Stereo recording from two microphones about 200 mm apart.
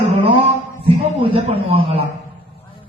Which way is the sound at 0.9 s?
25° right (ahead or behind).